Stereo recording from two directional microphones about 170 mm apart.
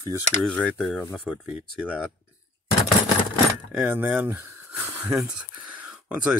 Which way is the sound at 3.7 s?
10° right (ahead or behind).